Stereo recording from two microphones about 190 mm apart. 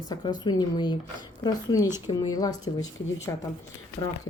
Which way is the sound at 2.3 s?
20° left (ahead or behind).